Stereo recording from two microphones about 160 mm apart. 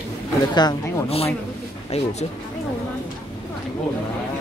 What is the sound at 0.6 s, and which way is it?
Speech, 30° left (ahead or behind).